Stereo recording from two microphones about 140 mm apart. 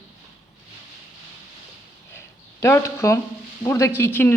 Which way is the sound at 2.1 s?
20° left (ahead or behind).